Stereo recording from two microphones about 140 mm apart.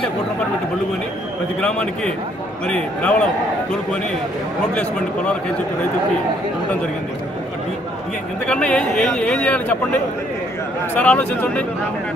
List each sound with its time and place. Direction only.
1.6 s speech: 5° left (ahead or behind)
8.5 s speech: 5° left (ahead or behind)
11.0 s speech: 10° left (ahead or behind)